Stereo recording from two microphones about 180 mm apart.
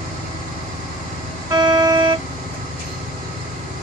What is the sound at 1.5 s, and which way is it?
Vehicle, 20° right (ahead or behind).